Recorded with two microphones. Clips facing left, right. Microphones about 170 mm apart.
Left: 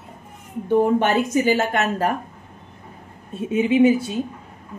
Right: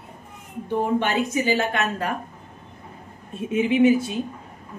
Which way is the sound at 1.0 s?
45° left (ahead or behind).